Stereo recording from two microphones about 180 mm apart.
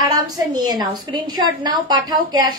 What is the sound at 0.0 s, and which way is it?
A woman's voice, 20° right (ahead or behind).